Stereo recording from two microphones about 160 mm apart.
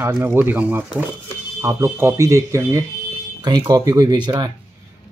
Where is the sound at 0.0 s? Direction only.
15° right (ahead or behind).